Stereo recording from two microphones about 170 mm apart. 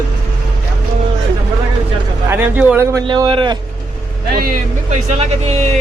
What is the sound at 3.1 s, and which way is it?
Speech, 25° right (ahead or behind).